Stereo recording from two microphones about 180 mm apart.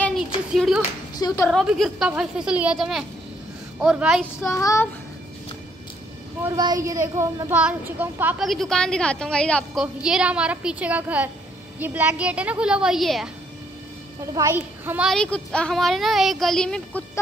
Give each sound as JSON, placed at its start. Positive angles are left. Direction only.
{"t": 0.5, "sound": "speech", "side_deg": -5}
{"t": 1.1, "sound": "speech", "side_deg": 20}
{"t": 1.5, "sound": "speech", "side_deg": 0}
{"t": 4.6, "sound": "a child's voice", "side_deg": 15}
{"t": 6.4, "sound": "speech", "side_deg": -20}
{"t": 14.2, "sound": "speech", "side_deg": -15}
{"t": 15.0, "sound": "speech", "side_deg": 5}